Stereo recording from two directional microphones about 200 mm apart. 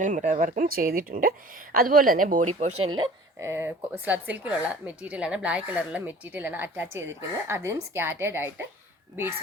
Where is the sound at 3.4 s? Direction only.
10° right (ahead or behind).